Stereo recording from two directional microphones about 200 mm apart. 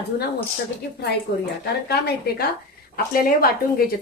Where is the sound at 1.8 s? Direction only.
55° left (ahead or behind).